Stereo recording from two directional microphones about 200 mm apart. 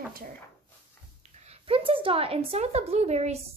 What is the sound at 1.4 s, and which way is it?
A woman's voice, 30° right (ahead or behind).